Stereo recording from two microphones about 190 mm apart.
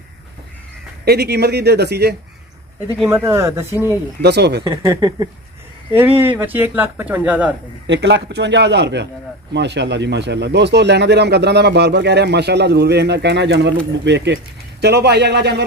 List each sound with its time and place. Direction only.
1.0 s a man's voice: 60° right (ahead or behind)
3.0 s speech: 10° right (ahead or behind)
4.2 s a man's voice: 60° right (ahead or behind)
4.6 s speech: 20° right (ahead or behind)
7.8 s a man's voice: 70° right (ahead or behind)